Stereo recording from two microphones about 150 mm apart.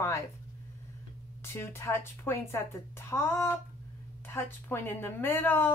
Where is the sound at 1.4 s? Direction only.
15° left (ahead or behind).